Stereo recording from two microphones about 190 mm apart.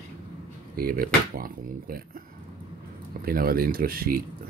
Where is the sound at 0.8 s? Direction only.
50° right (ahead or behind).